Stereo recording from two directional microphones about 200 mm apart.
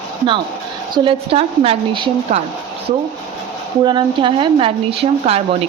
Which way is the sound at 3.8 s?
20° right (ahead or behind).